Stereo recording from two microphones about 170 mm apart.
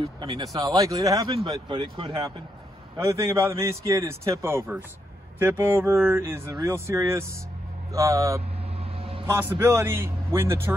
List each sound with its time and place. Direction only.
0.2 s speech: 25° right (ahead or behind)
3.0 s a man's voice: 15° right (ahead or behind)